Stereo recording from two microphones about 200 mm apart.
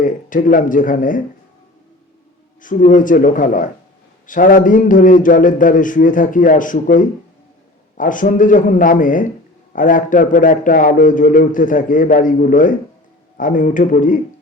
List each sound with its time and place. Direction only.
0.0 s a man's voice: 40° left (ahead or behind)
2.6 s a man's voice: 40° left (ahead or behind)